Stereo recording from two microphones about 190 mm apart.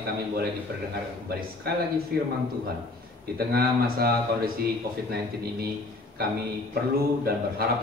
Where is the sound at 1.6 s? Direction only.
55° right (ahead or behind).